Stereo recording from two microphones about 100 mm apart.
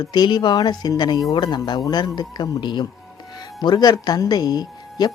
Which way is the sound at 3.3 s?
40° left (ahead or behind).